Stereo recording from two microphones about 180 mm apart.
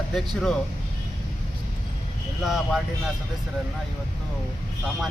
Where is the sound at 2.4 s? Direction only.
Centre (ahead or behind).